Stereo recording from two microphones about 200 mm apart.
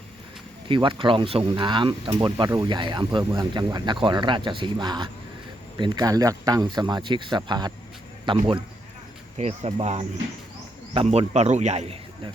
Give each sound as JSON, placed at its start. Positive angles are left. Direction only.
{"t": 0.7, "sound": "speech", "side_deg": -25}